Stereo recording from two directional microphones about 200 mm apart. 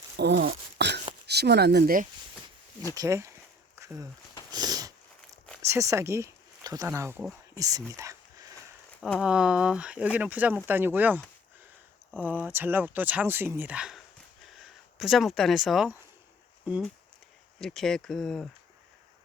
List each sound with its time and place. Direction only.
0.2 s wail: 60° right (ahead or behind)
1.3 s speech: 55° right (ahead or behind)
2.9 s speech: 15° right (ahead or behind)
3.8 s a sound: 15° right (ahead or behind)
5.6 s speech: 15° right (ahead or behind)
7.5 s a sound: 15° right (ahead or behind)
9.0 s speech: 5° left (ahead or behind)